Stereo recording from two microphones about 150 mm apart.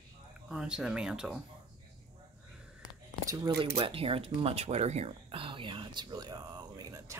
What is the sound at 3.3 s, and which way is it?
Speech, 25° right (ahead or behind).